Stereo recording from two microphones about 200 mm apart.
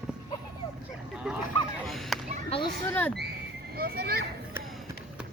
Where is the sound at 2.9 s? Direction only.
10° left (ahead or behind).